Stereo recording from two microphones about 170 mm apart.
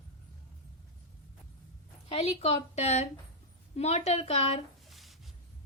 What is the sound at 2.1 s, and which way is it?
A woman's voice, 35° left (ahead or behind).